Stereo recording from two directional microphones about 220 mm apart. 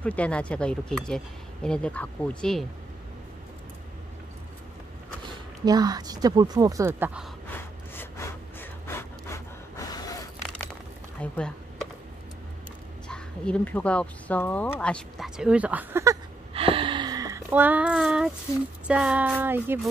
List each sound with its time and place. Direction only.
0.0 s speech: 5° left (ahead or behind)
5.7 s a woman's voice: 15° right (ahead or behind)
8.5 s gasp: 10° left (ahead or behind)
10.7 s a sound: 5° left (ahead or behind)
13.1 s speech: 5° left (ahead or behind); by 16.2 s 10° right (ahead or behind)
16.5 s a sound: 25° right (ahead or behind); by 18.3 s centre (ahead or behind)
18.9 s a woman's voice: 5° right (ahead or behind)